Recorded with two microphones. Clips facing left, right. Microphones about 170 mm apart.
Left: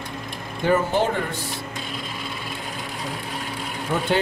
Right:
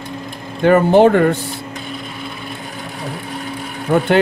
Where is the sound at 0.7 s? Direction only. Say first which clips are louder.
Right 10 dB; 70° right (ahead or behind).